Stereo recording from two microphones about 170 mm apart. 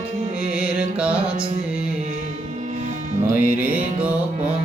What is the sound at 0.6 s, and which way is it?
Music, 5° right (ahead or behind).